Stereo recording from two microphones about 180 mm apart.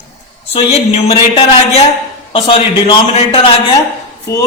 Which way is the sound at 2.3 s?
25° left (ahead or behind).